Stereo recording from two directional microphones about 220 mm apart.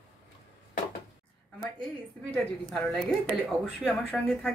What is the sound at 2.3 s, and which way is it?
Speech, 5° left (ahead or behind).